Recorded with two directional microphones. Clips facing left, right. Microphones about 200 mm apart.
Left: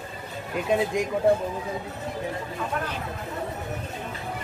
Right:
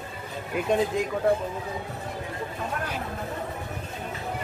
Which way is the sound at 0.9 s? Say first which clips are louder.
Left 1 dB; 15° left (ahead or behind).